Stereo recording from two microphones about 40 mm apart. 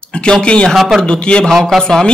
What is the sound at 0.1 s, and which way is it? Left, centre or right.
Speech, left.